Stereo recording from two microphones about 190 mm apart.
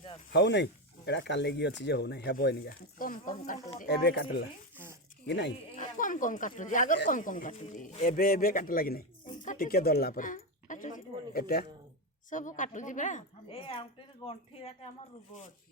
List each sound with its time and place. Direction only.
0.3 s speech: 65° left (ahead or behind); by 3.6 s 45° left (ahead or behind)
3.8 s speech: 55° left (ahead or behind)
5.6 s speech: 40° left (ahead or behind)
9.4 s a sound: 45° left (ahead or behind)
12.3 s a woman's voice: 40° left (ahead or behind)